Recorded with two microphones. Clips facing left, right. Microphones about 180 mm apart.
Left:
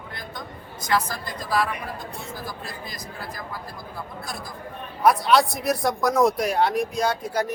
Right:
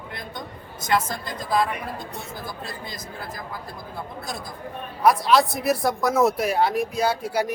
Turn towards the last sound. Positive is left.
turn(degrees=-10)  # may be behind; listen again after turning